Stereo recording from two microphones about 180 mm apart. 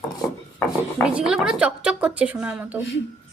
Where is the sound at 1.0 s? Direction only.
5° right (ahead or behind).